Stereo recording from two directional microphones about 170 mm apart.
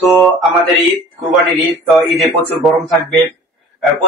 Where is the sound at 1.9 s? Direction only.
Centre (ahead or behind).